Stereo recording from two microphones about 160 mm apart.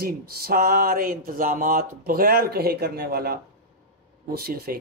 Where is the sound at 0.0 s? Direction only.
70° right (ahead or behind).